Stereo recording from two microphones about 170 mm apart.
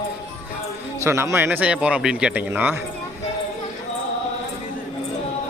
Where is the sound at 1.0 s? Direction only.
15° right (ahead or behind).